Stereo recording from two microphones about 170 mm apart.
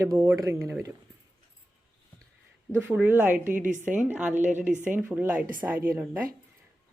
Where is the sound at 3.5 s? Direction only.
50° right (ahead or behind).